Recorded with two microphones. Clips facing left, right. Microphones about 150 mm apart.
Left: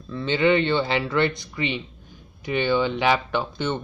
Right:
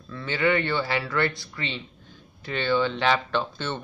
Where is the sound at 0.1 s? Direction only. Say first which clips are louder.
Left 4 dB; 20° left (ahead or behind).